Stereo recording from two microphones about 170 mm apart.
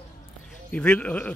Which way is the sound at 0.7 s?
5° left (ahead or behind).